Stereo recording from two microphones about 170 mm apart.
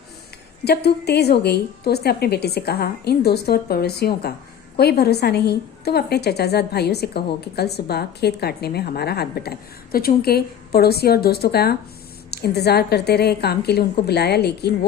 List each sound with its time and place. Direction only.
0.6 s a woman's voice: 70° left (ahead or behind)